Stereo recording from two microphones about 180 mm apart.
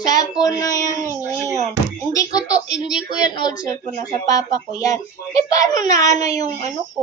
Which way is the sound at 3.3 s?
20° left (ahead or behind).